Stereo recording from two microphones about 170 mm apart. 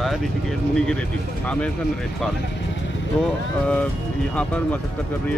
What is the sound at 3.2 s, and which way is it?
Speech, 5° left (ahead or behind).